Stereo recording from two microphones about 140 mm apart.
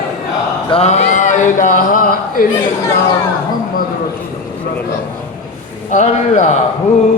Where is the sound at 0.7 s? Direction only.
50° left (ahead or behind); by 2.4 s 80° left.